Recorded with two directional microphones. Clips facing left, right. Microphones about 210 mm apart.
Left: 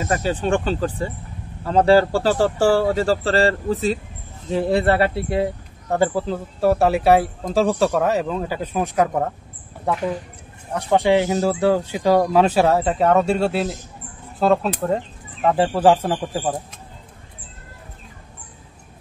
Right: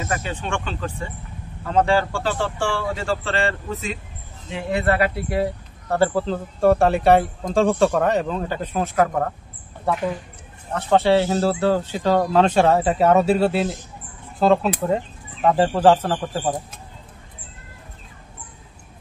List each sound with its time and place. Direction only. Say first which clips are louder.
0.0 s speech: left 5 dB; 35° left (ahead or behind); by 9.1 s 15° left (ahead or behind)
10.7 s speech: even; 15° left (ahead or behind)